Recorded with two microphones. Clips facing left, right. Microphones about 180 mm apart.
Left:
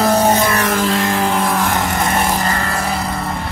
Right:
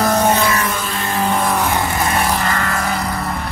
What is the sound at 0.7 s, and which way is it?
Vehicle, 90° left.